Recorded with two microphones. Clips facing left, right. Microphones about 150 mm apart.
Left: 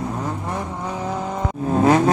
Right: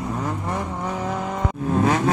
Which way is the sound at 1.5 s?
35° left (ahead or behind).